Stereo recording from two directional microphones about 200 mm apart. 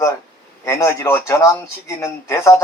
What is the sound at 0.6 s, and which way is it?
Speech, 15° left (ahead or behind).